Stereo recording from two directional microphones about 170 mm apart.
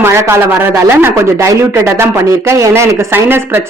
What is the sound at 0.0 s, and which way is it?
A man's voice, 15° right (ahead or behind).